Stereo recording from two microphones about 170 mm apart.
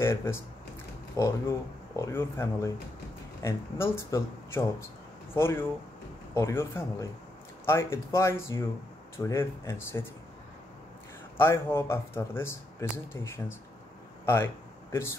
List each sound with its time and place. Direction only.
0.0 s speech: 15° left (ahead or behind)
11.3 s speech: 15° left (ahead or behind)
14.2 s a sound: 15° left (ahead or behind)